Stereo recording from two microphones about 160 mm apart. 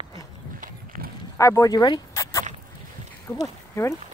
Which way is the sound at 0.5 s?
60° right (ahead or behind).